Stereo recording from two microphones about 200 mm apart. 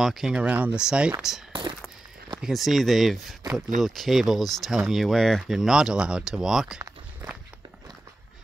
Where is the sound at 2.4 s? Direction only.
Centre (ahead or behind).